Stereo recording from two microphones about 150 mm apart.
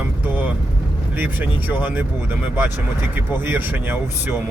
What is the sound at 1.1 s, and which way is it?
Speech, 15° right (ahead or behind).